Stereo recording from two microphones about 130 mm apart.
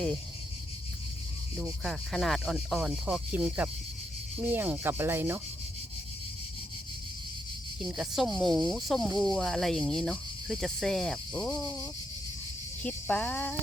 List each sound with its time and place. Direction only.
1.5 s speech: centre (ahead or behind)
4.4 s rub: 15° right (ahead or behind)
7.8 s speech: 5° right (ahead or behind)
12.8 s cricket: 10° left (ahead or behind)